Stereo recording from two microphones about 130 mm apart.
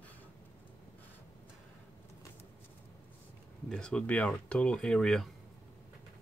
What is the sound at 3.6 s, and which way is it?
Speech, 5° left (ahead or behind).